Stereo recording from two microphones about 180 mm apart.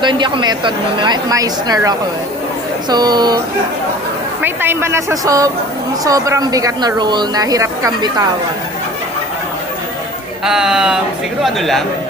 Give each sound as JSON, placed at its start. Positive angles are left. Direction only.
{"t": 0.0, "sound": "speech", "side_deg": -25}
{"t": 4.4, "sound": "speech", "side_deg": -10}
{"t": 10.4, "sound": "speech", "side_deg": -5}